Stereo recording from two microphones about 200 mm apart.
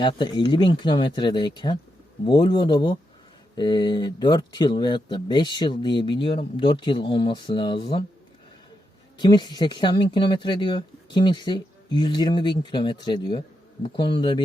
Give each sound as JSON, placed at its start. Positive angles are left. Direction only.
{"t": 0.0, "sound": "speech", "side_deg": 20}
{"t": 9.1, "sound": "speech", "side_deg": 20}